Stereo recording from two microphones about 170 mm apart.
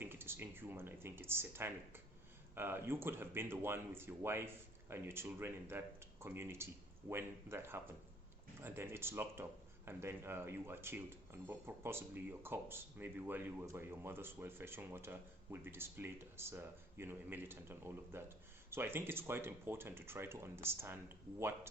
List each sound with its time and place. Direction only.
0.0 s speech: 10° right (ahead or behind)